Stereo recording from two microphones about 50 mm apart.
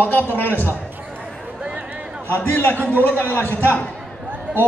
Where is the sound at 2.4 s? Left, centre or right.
Left.